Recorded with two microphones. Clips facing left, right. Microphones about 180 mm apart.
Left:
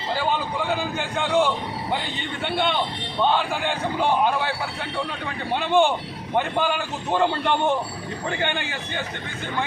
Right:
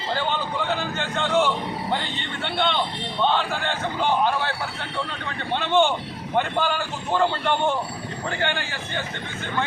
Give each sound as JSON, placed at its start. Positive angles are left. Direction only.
{"t": 0.7, "sound": "a man's voice", "side_deg": 10}
{"t": 5.5, "sound": "a man's voice", "side_deg": 15}